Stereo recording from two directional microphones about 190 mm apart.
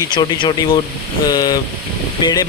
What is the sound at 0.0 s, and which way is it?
Speech, 25° left (ahead or behind).